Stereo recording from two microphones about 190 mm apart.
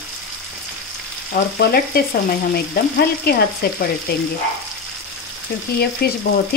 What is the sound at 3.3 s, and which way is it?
Speech, 55° left (ahead or behind).